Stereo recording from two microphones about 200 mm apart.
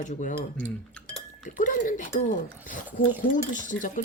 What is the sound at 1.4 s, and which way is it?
Speech, 40° left (ahead or behind).